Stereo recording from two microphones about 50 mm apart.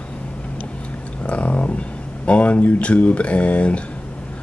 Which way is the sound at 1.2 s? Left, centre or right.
Left.